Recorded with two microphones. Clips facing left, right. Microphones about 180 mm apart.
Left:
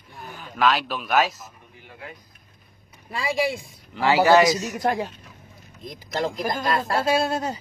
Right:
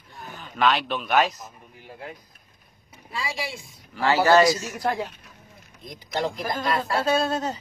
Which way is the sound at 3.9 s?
15° left (ahead or behind).